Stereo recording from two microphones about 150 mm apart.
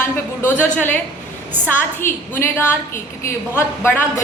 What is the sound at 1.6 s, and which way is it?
A woman's voice, 15° left (ahead or behind).